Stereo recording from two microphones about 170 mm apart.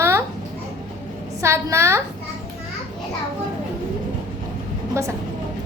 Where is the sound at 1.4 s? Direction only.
15° right (ahead or behind).